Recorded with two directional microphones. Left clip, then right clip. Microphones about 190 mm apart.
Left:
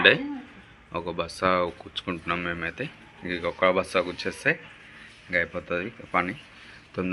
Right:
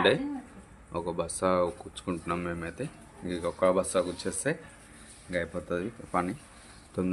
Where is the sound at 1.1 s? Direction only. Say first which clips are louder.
Left 3 dB; 10° right (ahead or behind).